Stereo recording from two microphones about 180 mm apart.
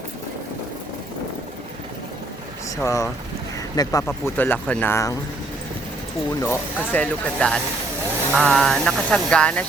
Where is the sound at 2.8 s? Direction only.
15° left (ahead or behind).